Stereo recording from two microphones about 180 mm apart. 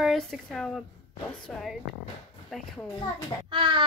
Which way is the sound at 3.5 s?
25° right (ahead or behind).